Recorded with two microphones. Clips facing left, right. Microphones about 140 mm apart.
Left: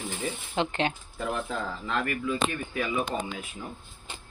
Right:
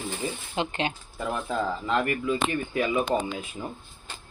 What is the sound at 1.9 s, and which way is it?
Speech, 25° right (ahead or behind).